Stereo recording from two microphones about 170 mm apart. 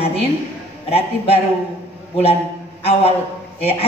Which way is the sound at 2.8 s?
35° left (ahead or behind).